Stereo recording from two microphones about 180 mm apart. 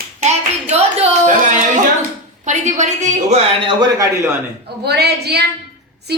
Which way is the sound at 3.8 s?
20° right (ahead or behind).